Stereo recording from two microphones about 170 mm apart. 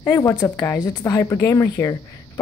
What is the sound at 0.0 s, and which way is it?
Speech, 20° left (ahead or behind).